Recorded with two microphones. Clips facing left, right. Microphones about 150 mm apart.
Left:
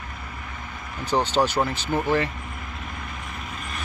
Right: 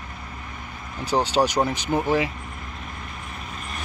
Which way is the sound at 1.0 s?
10° right (ahead or behind).